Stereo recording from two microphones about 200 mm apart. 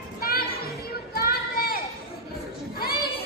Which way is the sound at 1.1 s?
45° left (ahead or behind).